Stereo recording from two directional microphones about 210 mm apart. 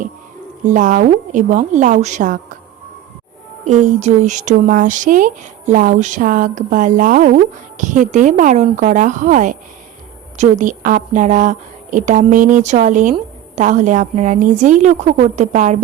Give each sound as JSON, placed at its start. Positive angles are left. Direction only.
{"t": 0.6, "sound": "speech", "side_deg": -35}
{"t": 3.7, "sound": "speech", "side_deg": -35}